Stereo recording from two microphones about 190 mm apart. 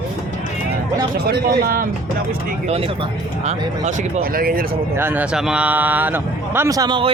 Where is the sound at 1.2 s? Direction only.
55° right (ahead or behind).